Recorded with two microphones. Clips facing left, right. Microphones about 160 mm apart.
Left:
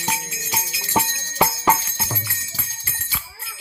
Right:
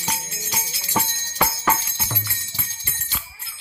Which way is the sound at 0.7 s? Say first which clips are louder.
Left 3 dB; 10° left (ahead or behind).